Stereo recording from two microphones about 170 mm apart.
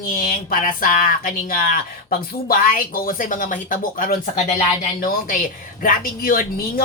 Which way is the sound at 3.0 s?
50° left (ahead or behind).